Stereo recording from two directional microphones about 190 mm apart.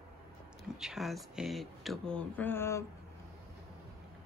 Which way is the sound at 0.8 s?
Centre (ahead or behind).